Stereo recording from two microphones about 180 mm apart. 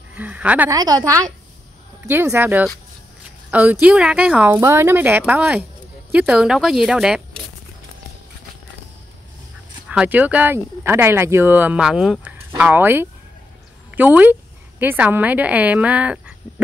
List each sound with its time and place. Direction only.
0.1 s speech: 10° right (ahead or behind)
0.7 s a woman's voice: 20° right (ahead or behind)
3.8 s speech: 5° right (ahead or behind)
9.8 s speech: 10° right (ahead or behind)